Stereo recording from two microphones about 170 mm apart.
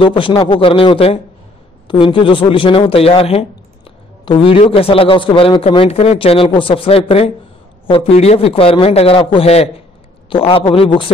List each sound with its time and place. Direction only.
0.0 s speech: 30° left (ahead or behind)